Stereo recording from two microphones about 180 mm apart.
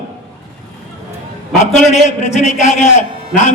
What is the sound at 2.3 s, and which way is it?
Speech, 40° left (ahead or behind).